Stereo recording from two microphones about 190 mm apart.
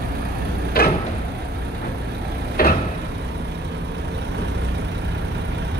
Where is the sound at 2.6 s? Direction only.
50° left (ahead or behind).